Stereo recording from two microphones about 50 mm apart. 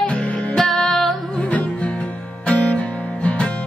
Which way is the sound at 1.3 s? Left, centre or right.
Left.